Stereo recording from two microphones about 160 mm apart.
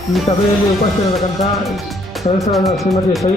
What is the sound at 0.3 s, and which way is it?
Speech, 45° left (ahead or behind).